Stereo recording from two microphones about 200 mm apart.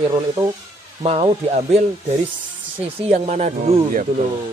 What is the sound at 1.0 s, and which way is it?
Speech, 35° right (ahead or behind).